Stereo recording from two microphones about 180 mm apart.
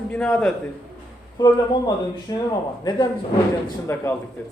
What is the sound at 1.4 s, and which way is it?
Speech, 25° left (ahead or behind).